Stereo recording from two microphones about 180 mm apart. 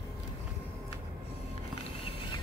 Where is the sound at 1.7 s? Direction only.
30° left (ahead or behind).